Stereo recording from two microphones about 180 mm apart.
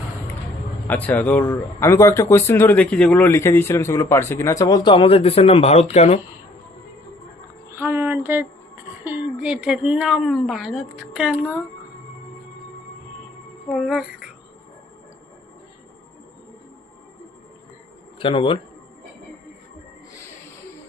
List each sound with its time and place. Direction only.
0.9 s speech: 10° left (ahead or behind); by 6.1 s 35° left (ahead or behind)
7.8 s speech: 10° right (ahead or behind)
13.7 s speech: centre (ahead or behind)
18.2 s a man's voice: 30° left (ahead or behind)